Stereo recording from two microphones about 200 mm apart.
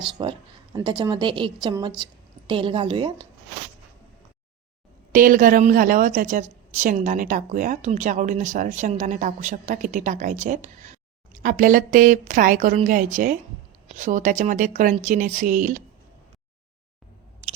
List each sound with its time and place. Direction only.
0.0 s a woman's voice: 25° right (ahead or behind)
5.1 s a woman's voice: 45° right (ahead or behind)